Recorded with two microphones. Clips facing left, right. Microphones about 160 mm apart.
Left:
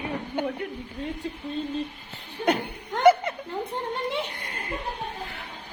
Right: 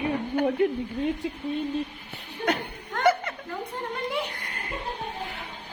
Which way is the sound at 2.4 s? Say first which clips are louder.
Left 3 dB; 20° left (ahead or behind).